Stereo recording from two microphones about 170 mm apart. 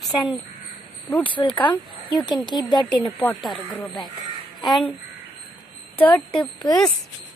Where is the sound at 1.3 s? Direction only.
30° left (ahead or behind).